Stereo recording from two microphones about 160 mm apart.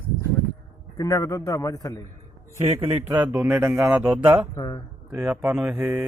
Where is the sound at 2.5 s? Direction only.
40° right (ahead or behind).